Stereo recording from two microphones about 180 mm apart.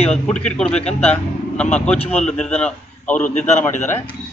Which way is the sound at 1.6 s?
5° left (ahead or behind).